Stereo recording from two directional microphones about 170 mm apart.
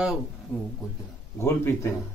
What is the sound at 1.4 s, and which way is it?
Speech, 15° left (ahead or behind).